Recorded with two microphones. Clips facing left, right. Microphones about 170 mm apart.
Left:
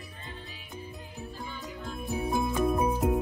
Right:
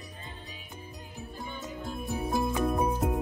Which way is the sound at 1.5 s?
20° right (ahead or behind).